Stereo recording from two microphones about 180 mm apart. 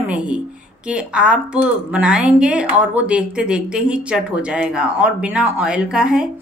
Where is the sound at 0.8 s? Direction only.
5° right (ahead or behind).